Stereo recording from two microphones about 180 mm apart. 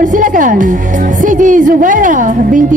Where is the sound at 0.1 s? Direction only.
45° right (ahead or behind).